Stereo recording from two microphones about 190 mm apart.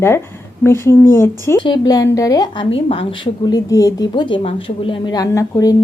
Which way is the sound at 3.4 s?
20° left (ahead or behind).